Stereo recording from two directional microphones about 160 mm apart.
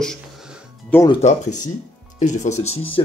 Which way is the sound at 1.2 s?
50° left (ahead or behind).